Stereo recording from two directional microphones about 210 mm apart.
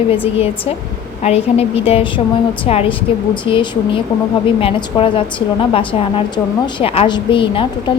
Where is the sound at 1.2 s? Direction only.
30° left (ahead or behind).